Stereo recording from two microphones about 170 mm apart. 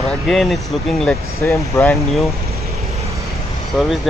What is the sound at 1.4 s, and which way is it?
Speech, 15° left (ahead or behind).